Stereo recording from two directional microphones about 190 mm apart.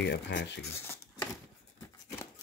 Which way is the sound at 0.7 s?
10° left (ahead or behind).